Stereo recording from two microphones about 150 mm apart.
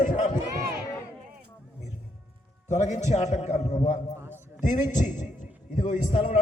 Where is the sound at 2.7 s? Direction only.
50° left (ahead or behind).